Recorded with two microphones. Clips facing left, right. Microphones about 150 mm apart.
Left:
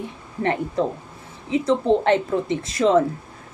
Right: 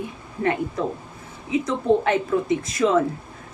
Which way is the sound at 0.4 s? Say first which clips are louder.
Left 1 dB; 35° left (ahead or behind).